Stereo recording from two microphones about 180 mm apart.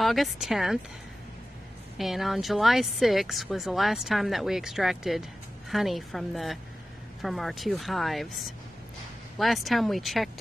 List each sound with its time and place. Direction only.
0.0 s a woman's voice: centre (ahead or behind)
2.0 s a woman's voice: centre (ahead or behind)